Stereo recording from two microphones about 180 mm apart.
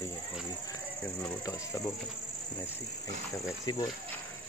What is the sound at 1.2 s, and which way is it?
Speech, 15° left (ahead or behind).